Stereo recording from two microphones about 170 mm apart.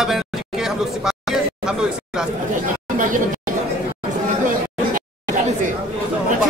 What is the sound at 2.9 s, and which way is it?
Chatter, 50° right (ahead or behind).